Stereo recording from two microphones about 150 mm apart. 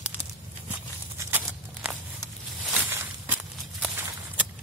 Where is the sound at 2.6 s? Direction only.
5° right (ahead or behind).